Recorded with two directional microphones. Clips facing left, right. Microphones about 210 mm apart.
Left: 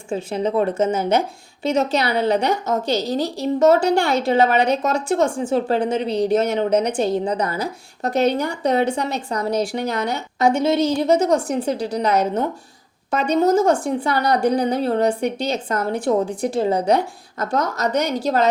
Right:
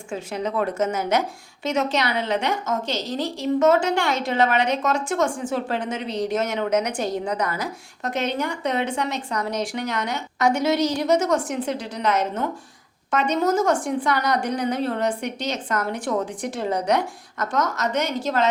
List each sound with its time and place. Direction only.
0.1 s a woman's voice: 30° left (ahead or behind)